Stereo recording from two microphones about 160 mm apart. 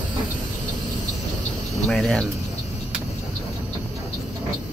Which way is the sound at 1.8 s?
5° left (ahead or behind).